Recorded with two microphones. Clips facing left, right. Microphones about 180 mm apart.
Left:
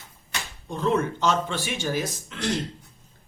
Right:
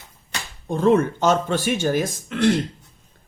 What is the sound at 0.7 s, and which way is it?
Speech, 50° right (ahead or behind).